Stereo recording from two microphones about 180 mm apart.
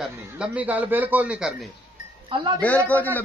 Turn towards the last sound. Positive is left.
turn(degrees=10)  # may be behind; listen again after turning